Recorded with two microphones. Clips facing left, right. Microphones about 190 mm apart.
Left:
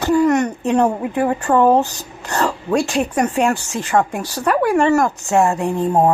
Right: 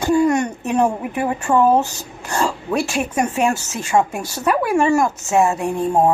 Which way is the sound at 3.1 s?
15° right (ahead or behind).